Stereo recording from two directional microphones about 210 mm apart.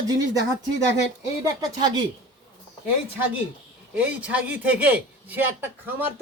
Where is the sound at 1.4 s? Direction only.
15° right (ahead or behind).